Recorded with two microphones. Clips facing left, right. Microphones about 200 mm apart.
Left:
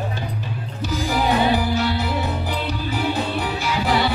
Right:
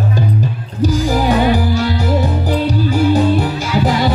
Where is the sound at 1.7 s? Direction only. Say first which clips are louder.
Right 6 dB; 40° right (ahead or behind).